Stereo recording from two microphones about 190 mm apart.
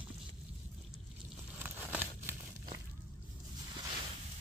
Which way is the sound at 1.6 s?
10° right (ahead or behind).